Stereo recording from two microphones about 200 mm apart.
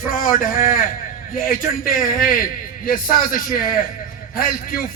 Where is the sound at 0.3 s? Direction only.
45° left (ahead or behind).